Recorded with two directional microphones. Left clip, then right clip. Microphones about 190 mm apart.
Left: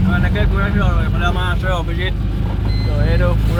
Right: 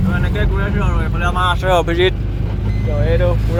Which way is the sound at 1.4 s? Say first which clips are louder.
Right 7 dB; 60° right (ahead or behind).